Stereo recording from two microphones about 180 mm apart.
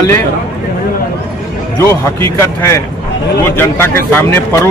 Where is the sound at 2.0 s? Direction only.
15° left (ahead or behind).